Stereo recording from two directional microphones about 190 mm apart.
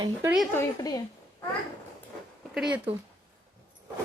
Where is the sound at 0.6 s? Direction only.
20° left (ahead or behind).